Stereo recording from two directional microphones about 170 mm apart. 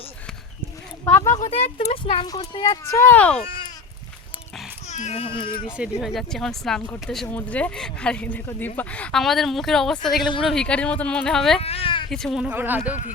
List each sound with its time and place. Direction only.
1.0 s speech: 20° left (ahead or behind)
1.4 s speech: 40° left (ahead or behind); by 3.4 s 10° left (ahead or behind)
4.9 s speech: 45° left (ahead or behind)
6.0 s speech: centre (ahead or behind)
11.6 s a sound: 35° left (ahead or behind)
12.1 s speech: centre (ahead or behind)